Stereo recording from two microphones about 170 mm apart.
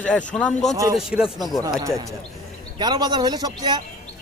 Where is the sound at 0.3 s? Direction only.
10° left (ahead or behind).